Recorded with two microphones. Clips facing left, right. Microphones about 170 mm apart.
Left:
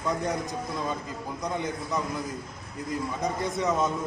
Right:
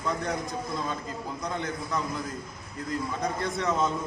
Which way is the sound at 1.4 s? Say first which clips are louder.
Left 3 dB; 15° left (ahead or behind).